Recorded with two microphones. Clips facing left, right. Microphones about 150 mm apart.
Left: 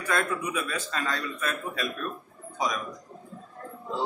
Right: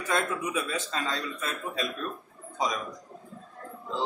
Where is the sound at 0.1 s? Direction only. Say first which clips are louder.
Even; 25° right (ahead or behind).